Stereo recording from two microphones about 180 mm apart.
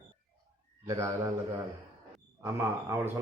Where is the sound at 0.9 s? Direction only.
15° right (ahead or behind).